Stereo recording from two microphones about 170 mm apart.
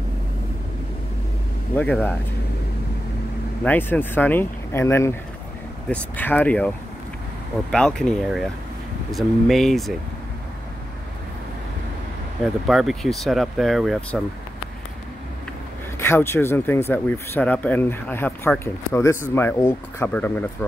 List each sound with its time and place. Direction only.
1.8 s speech: 10° left (ahead or behind)
3.6 s speech: 10° left (ahead or behind)
7.7 s speech: 5° left (ahead or behind)
12.6 s speech: centre (ahead or behind)
16.0 s speech: 15° left (ahead or behind)